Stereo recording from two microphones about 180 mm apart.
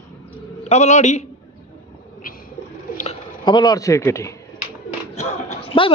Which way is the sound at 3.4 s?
25° left (ahead or behind).